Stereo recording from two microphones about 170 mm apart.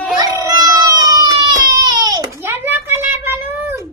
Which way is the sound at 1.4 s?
25° right (ahead or behind).